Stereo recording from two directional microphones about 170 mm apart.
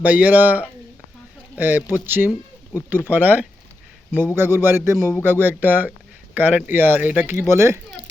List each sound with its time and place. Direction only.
0.0 s speech: 10° right (ahead or behind)